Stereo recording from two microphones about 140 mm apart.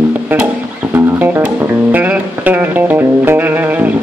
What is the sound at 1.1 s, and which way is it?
Music, 10° right (ahead or behind).